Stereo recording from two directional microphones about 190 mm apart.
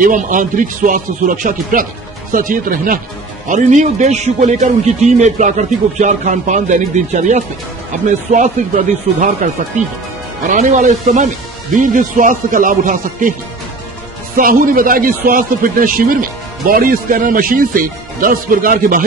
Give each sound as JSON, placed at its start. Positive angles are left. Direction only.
{"t": 0.0, "sound": "speech", "side_deg": -45}
{"t": 10.4, "sound": "speech", "side_deg": -40}
{"t": 14.3, "sound": "speech", "side_deg": -45}